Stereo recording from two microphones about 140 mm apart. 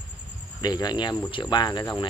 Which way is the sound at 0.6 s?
30° left (ahead or behind).